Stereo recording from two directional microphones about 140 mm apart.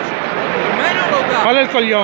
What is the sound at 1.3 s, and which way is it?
Speech, 20° right (ahead or behind).